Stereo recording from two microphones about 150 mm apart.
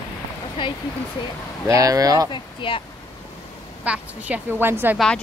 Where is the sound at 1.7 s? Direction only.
20° right (ahead or behind).